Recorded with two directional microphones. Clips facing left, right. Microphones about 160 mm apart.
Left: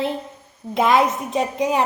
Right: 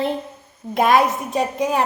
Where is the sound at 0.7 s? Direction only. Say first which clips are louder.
Right 1 dB; 20° left (ahead or behind).